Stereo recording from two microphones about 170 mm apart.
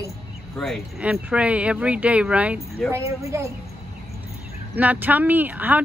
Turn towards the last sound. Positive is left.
turn(degrees=-10)  # may be behind; listen again after turning